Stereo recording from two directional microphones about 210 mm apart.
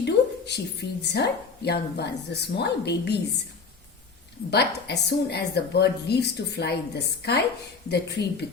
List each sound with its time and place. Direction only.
0.0 s speech: 55° left (ahead or behind)
4.5 s speech: 50° left (ahead or behind)